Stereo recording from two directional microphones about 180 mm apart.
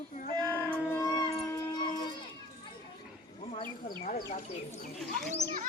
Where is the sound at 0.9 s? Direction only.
15° left (ahead or behind).